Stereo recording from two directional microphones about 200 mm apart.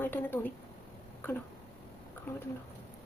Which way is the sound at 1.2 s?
10° left (ahead or behind).